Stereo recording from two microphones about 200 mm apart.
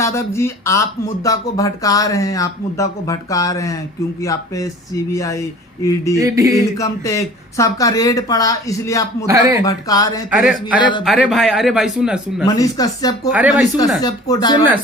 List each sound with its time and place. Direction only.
0.0 s speech: 15° left (ahead or behind)
6.1 s a sound: 15° right (ahead or behind)
6.7 s speech: 15° left (ahead or behind)
9.2 s a sound: 15° right (ahead or behind)
9.6 s speech: 20° left (ahead or behind)
10.3 s speech: centre (ahead or behind)
10.8 s speech: 20° left (ahead or behind)
11.0 s speech: centre (ahead or behind)
12.5 s speech: 20° left (ahead or behind)
13.3 s speech: 5° right (ahead or behind)
14.0 s speech: 20° left (ahead or behind)